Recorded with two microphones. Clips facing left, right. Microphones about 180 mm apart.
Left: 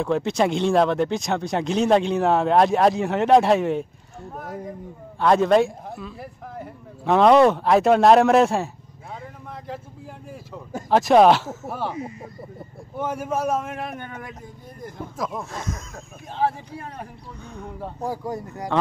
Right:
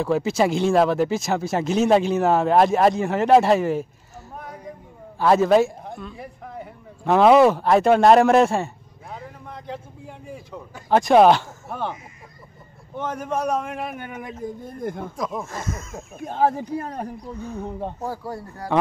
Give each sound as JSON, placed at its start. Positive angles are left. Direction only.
{"t": 0.0, "sound": "a man's voice", "side_deg": -5}
{"t": 12.9, "sound": "speech", "side_deg": 10}
{"t": 14.4, "sound": "speech", "side_deg": -40}
{"t": 14.8, "sound": "speech", "side_deg": -55}
{"t": 15.1, "sound": "speech", "side_deg": 0}
{"t": 16.3, "sound": "speech", "side_deg": -45}
{"t": 17.4, "sound": "speech", "side_deg": -5}
{"t": 17.6, "sound": "speech", "side_deg": -25}
{"t": 18.0, "sound": "speech", "side_deg": 15}